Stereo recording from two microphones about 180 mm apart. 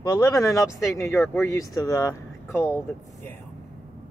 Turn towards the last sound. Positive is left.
turn(degrees=15)  # may be behind; listen again after turning